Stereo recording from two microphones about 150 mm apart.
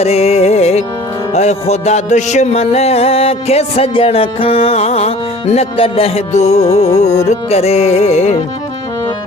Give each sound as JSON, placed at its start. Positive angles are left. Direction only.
{"t": 0.0, "sound": "music", "side_deg": 45}